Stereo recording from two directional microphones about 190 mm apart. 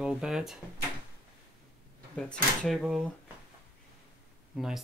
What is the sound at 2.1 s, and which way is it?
Speech, 5° left (ahead or behind).